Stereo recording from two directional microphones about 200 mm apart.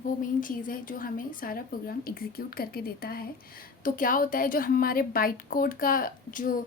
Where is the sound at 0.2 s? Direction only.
40° left (ahead or behind).